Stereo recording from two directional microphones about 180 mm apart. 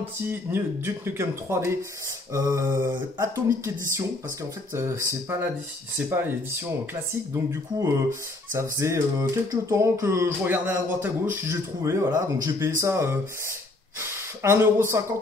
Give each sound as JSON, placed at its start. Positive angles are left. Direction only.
{"t": 0.3, "sound": "speech", "side_deg": -10}
{"t": 4.7, "sound": "speech", "side_deg": -15}
{"t": 8.5, "sound": "speech", "side_deg": -15}
{"t": 14.4, "sound": "speech", "side_deg": -15}